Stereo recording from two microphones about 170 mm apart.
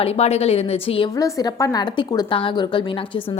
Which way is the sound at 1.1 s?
20° left (ahead or behind).